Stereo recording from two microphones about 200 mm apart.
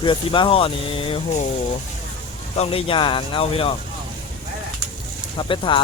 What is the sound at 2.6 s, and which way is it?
Speech, 30° left (ahead or behind).